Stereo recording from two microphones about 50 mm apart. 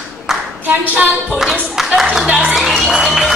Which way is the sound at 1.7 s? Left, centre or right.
Centre.